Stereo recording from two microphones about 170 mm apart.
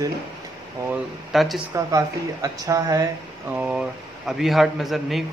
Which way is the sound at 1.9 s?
20° right (ahead or behind).